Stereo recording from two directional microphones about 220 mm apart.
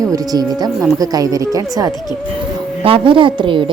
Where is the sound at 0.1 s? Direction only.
15° right (ahead or behind).